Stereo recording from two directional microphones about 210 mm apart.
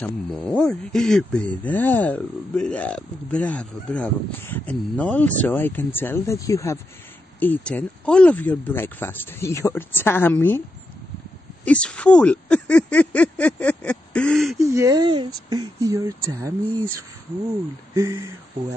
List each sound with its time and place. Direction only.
0.0 s speech: 5° left (ahead or behind)
11.6 s speech: 5° left (ahead or behind)
14.6 s speech: 15° right (ahead or behind)
17.9 s speech: 15° right (ahead or behind)